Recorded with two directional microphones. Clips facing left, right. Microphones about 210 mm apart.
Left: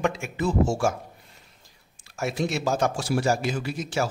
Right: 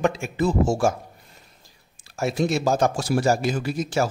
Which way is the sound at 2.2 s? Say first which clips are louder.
Right 4 dB; 35° right (ahead or behind).